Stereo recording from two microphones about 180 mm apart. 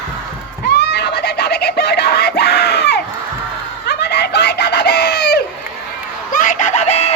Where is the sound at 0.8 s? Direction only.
65° left (ahead or behind).